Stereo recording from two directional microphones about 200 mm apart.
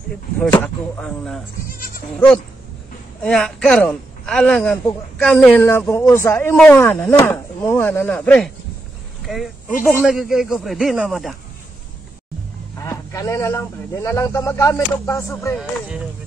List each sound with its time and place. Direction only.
0.9 s speech: 5° left (ahead or behind)
1.7 s goat: 45° left (ahead or behind)
2.1 s a man's voice: 5° left (ahead or behind)
12.7 s a man's voice: 15° left (ahead or behind)